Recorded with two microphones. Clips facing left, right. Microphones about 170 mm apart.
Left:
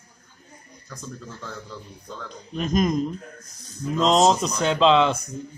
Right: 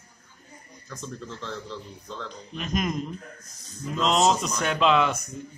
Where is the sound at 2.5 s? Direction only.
40° left (ahead or behind).